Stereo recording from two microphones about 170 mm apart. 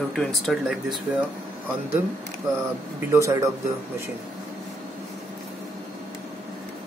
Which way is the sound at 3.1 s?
15° right (ahead or behind).